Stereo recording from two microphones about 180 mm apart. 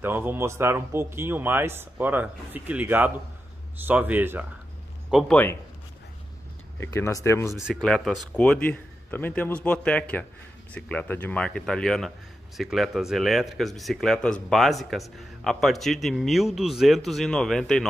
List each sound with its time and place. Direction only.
0.0 s speech: 10° right (ahead or behind)
5.1 s speech: 10° left (ahead or behind)
6.8 s speech: 15° left (ahead or behind)
7.5 s speech: centre (ahead or behind)